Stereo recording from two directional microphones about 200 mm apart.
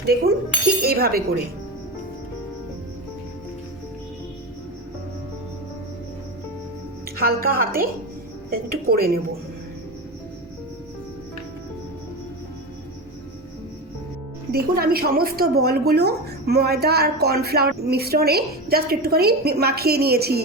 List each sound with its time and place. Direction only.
0.0 s speech: 50° right (ahead or behind)
7.2 s speech: 50° right (ahead or behind)
14.5 s speech: 50° right (ahead or behind)